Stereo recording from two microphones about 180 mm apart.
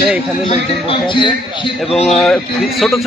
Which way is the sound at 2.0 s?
5° left (ahead or behind).